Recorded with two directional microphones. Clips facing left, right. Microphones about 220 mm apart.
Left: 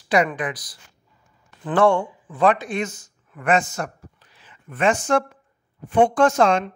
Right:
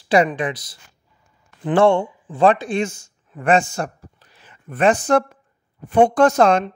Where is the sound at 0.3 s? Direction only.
25° right (ahead or behind).